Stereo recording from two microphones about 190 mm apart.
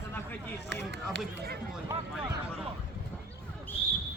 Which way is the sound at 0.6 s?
65° right (ahead or behind).